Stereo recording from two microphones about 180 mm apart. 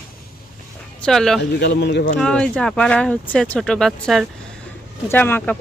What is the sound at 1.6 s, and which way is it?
Speech, 70° left (ahead or behind).